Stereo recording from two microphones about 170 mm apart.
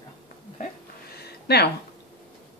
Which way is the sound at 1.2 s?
70° left (ahead or behind).